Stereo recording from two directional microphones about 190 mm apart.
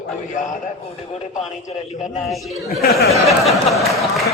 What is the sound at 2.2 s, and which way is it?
Speech, centre (ahead or behind).